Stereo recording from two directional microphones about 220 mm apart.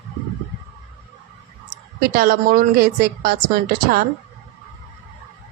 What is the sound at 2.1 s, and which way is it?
A woman's voice, 40° right (ahead or behind).